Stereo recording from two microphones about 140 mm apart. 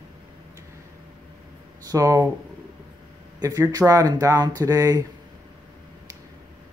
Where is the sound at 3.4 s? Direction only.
25° right (ahead or behind).